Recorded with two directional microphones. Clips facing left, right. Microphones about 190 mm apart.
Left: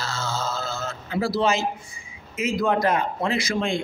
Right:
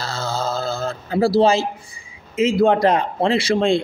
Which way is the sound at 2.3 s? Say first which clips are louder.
Right 7 dB; 30° right (ahead or behind).